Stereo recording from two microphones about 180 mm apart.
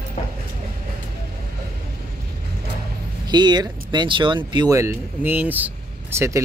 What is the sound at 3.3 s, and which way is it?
Speech, 25° right (ahead or behind).